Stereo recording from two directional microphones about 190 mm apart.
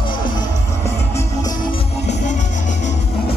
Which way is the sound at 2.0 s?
40° left (ahead or behind).